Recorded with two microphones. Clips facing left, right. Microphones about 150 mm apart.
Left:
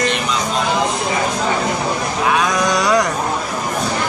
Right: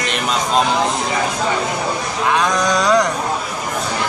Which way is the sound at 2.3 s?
10° left (ahead or behind).